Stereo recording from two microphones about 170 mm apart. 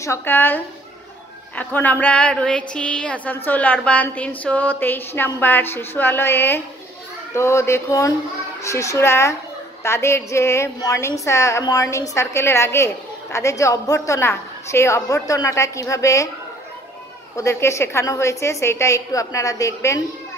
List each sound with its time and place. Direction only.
0.0 s a woman's voice: 15° left (ahead or behind)
17.4 s a woman's voice: 15° left (ahead or behind)